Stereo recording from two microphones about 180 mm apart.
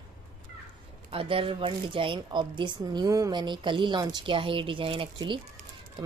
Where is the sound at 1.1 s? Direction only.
30° right (ahead or behind).